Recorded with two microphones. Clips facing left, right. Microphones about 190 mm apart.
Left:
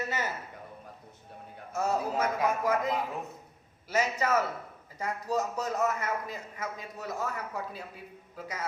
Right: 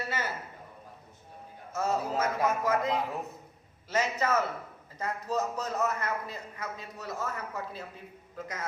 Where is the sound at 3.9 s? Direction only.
10° left (ahead or behind).